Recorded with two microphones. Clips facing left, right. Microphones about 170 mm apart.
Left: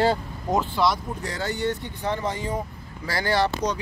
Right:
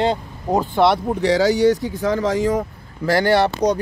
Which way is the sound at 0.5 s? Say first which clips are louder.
Right 6 dB; 50° right (ahead or behind).